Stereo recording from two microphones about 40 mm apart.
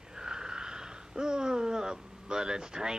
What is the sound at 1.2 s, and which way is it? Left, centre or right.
Speech, centre.